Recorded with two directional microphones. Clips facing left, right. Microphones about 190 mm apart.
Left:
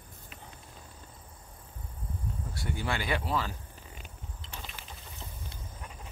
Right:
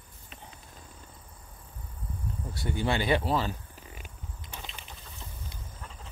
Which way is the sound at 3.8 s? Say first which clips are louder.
Right 1 dB; 10° right (ahead or behind).